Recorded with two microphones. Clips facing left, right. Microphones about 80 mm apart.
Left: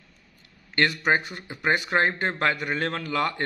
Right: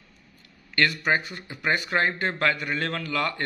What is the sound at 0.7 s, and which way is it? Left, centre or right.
Speech, left.